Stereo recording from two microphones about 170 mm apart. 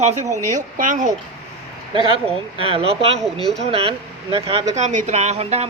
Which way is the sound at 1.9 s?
30° right (ahead or behind).